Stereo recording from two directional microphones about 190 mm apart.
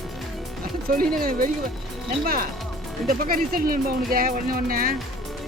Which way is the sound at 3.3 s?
50° right (ahead or behind).